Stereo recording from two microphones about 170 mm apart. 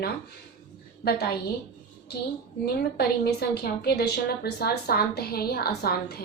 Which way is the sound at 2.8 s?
65° left (ahead or behind).